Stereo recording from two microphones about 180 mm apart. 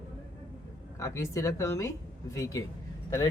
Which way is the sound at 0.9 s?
15° left (ahead or behind).